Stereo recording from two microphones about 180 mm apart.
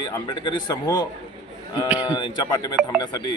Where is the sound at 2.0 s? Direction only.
20° left (ahead or behind).